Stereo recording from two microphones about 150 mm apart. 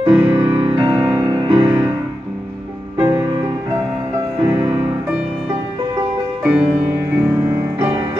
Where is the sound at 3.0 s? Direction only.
25° right (ahead or behind).